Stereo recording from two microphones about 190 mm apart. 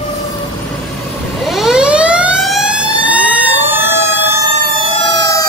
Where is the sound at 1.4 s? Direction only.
Centre (ahead or behind).